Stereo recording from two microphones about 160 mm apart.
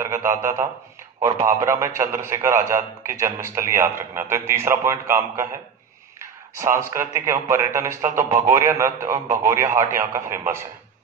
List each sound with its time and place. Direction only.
0.0 s a man's voice: 15° right (ahead or behind)
6.6 s a man's voice: 15° right (ahead or behind)